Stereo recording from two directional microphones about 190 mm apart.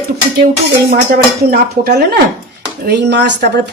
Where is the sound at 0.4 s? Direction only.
50° right (ahead or behind).